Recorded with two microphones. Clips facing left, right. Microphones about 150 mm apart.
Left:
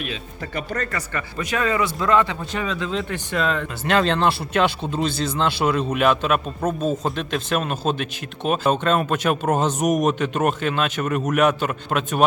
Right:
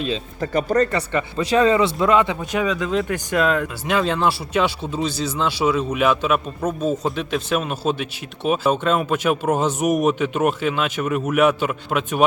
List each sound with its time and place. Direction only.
0.3 s speech: 40° right (ahead or behind)
0.9 s a man's voice: 25° right (ahead or behind); by 12.2 s 10° right (ahead or behind)